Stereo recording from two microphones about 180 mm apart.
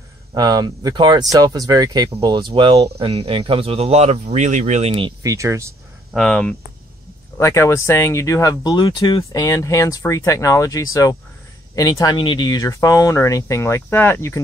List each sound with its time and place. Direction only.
0.3 s speech: 20° right (ahead or behind)
5.2 s speech: 15° right (ahead or behind)
6.1 s speech: 5° left (ahead or behind)
7.3 s speech: 15° left (ahead or behind)